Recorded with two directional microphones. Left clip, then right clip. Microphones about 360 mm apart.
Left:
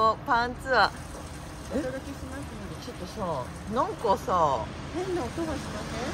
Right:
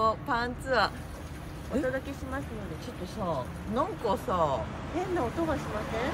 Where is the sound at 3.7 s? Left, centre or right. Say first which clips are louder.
Left 4 dB; centre.